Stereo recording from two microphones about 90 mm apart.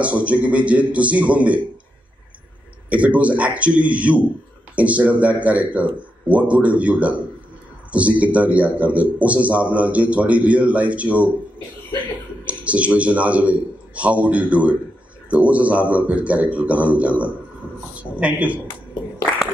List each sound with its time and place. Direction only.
0.0 s a man's voice: 15° right (ahead or behind)
2.9 s a man's voice: 15° right (ahead or behind)
12.4 s a man's voice: 15° right (ahead or behind)